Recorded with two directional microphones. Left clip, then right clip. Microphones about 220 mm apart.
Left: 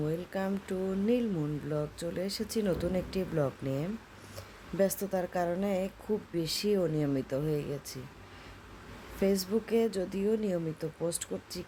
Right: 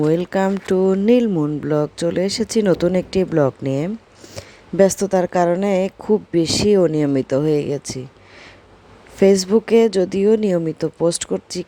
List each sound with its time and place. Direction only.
0.0 s speech: 35° right (ahead or behind)
9.1 s speech: 35° right (ahead or behind)